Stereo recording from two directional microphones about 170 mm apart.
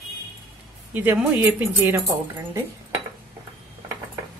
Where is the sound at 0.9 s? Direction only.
10° right (ahead or behind).